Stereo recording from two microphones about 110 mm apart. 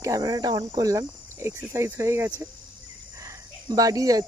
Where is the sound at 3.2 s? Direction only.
30° right (ahead or behind).